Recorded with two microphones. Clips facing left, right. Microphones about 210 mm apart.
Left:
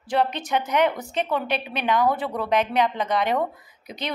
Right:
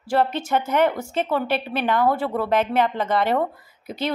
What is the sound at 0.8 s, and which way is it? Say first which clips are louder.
Speech: right 1 dB; 15° left (ahead or behind).